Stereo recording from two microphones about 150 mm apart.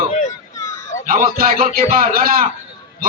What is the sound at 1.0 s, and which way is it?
A man's voice, 70° right (ahead or behind).